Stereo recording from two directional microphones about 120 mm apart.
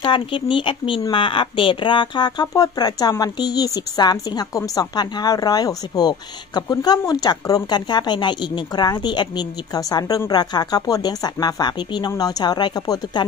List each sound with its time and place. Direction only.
0.0 s speech: 45° left (ahead or behind)